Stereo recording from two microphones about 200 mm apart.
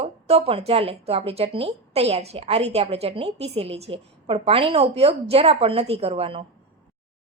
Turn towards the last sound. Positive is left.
turn(degrees=-30)  # may be behind; listen again after turning